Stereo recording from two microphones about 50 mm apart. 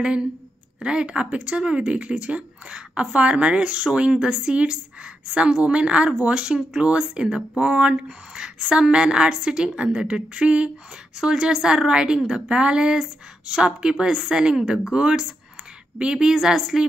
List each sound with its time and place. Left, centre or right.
0.7 s a woman's voice: centre